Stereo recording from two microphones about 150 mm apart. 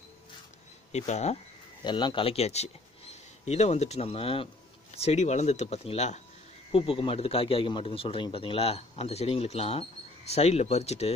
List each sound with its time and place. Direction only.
0.9 s speech: 50° left (ahead or behind)
1.9 s speech: 30° left (ahead or behind); by 6.2 s 50° left (ahead or behind)
6.7 s a man's voice: 35° left (ahead or behind)